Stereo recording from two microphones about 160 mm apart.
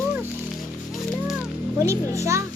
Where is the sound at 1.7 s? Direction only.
20° right (ahead or behind).